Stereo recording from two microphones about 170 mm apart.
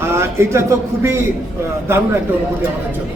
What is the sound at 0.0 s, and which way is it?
A man's voice, 15° right (ahead or behind).